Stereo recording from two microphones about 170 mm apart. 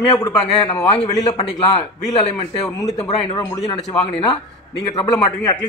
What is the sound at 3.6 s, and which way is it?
Speech, 30° left (ahead or behind).